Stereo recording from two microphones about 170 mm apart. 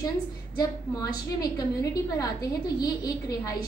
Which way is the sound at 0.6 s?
20° left (ahead or behind).